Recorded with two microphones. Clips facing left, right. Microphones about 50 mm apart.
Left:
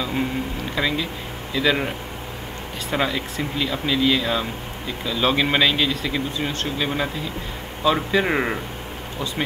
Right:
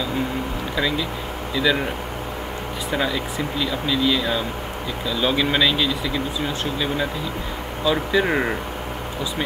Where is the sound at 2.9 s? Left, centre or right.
Centre.